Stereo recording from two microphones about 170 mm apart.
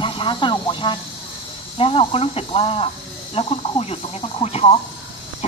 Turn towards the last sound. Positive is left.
turn(degrees=35)  # may be behind; listen again after turning